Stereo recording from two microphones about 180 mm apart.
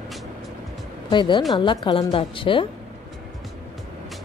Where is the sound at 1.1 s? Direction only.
25° left (ahead or behind).